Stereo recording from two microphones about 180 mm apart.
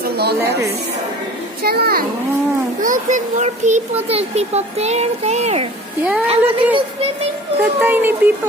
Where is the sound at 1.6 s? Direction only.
60° right (ahead or behind).